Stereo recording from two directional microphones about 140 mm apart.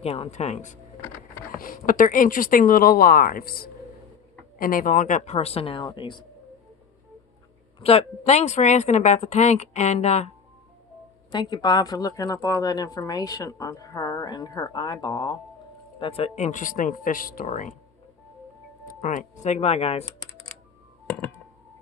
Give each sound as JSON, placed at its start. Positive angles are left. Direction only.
{"t": 0.0, "sound": "speech", "side_deg": 45}
{"t": 1.4, "sound": "speech", "side_deg": 85}
{"t": 7.8, "sound": "speech", "side_deg": 50}
{"t": 11.3, "sound": "speech", "side_deg": 30}
{"t": 16.0, "sound": "speech", "side_deg": 45}
{"t": 18.9, "sound": "speech", "side_deg": 70}